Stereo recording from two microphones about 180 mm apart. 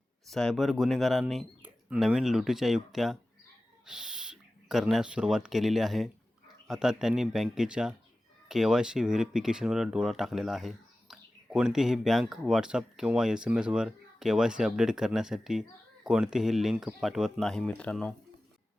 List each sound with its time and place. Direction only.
0.3 s speech: centre (ahead or behind)